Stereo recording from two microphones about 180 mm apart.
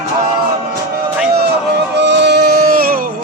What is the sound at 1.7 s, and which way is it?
Music, 75° right (ahead or behind).